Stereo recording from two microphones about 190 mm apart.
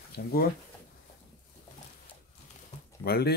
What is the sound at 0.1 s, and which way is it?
Speech, 55° left (ahead or behind).